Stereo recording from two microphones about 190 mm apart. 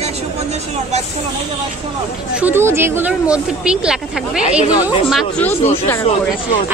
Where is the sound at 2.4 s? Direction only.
10° right (ahead or behind).